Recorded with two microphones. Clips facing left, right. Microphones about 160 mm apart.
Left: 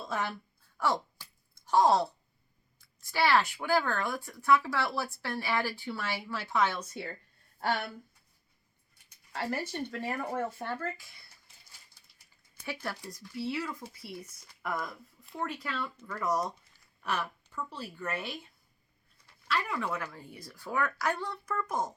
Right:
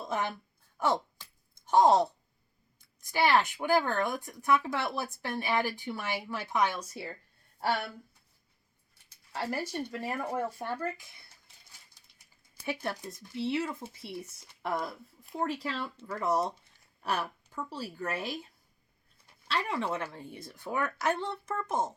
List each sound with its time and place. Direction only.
0.0 s a woman's voice: 20° right (ahead or behind)
9.3 s speech: 10° right (ahead or behind)
12.6 s speech: 20° right (ahead or behind); by 18.3 s 35° right (ahead or behind)
19.5 s speech: 30° right (ahead or behind)